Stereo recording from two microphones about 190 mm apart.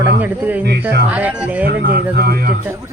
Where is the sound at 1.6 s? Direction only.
55° right (ahead or behind).